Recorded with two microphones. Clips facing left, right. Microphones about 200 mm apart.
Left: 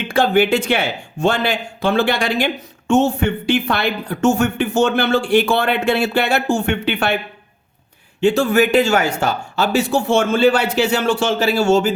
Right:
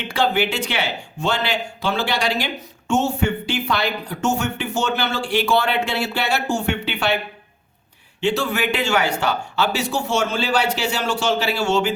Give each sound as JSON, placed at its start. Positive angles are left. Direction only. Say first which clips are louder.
{"t": 0.1, "sound": "speech", "louder": "left 6 dB", "side_deg": 50}
{"t": 8.2, "sound": "speech", "louder": "left 7 dB", "side_deg": 45}